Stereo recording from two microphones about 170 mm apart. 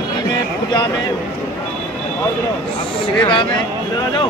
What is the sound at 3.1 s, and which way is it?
Speech, 30° left (ahead or behind).